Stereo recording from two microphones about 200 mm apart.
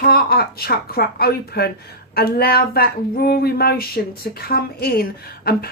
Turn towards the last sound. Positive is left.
turn(degrees=50)  # may be behind; listen again after turning